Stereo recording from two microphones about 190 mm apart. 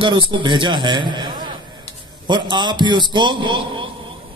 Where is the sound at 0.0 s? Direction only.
25° right (ahead or behind).